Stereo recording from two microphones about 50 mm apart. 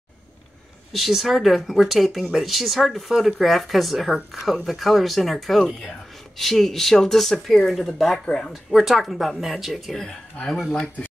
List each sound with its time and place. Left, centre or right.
0.9 s speech: centre
8.3 s speech: centre
8.6 s speech: centre